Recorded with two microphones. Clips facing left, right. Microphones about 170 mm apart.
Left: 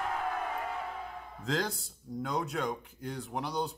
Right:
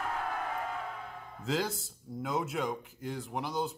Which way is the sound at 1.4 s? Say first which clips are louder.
Right 1 dB; 5° right (ahead or behind).